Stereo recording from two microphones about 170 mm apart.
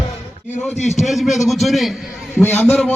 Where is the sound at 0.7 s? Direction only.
40° left (ahead or behind).